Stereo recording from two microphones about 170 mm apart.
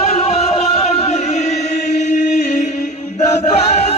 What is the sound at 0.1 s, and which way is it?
Chant, 35° left (ahead or behind).